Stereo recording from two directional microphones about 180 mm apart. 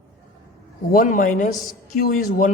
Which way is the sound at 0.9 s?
50° left (ahead or behind).